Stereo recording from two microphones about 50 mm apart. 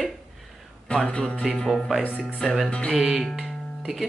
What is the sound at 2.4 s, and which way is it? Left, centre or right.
Speech, centre.